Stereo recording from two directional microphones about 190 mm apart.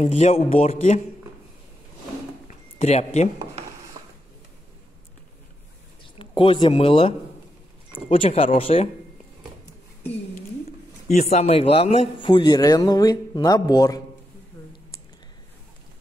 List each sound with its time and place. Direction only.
0.0 s speech: 35° left (ahead or behind)
2.8 s speech: 35° left (ahead or behind)
6.1 s speech: 25° left (ahead or behind)
11.1 s speech: 35° left (ahead or behind); by 14.0 s 20° left (ahead or behind)